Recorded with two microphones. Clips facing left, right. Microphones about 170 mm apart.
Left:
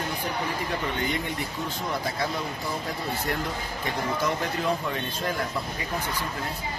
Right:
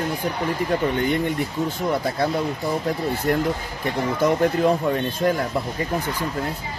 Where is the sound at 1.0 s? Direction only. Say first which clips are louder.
Right 7 dB; 50° right (ahead or behind).